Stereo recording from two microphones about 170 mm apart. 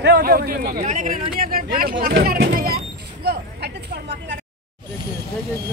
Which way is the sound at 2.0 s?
65° right (ahead or behind).